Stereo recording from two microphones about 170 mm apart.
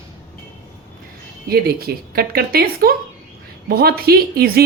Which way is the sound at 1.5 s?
65° right (ahead or behind).